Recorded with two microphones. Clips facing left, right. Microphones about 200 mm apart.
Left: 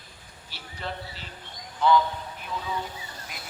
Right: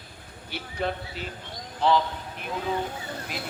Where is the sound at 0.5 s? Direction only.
55° right (ahead or behind).